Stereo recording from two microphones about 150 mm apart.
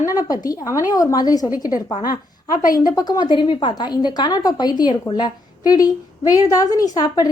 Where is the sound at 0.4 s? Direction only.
25° left (ahead or behind).